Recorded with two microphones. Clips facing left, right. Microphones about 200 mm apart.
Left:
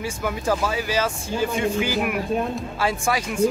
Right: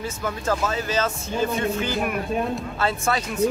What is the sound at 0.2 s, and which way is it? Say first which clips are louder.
Speech: left 1 dB; 10° left (ahead or behind).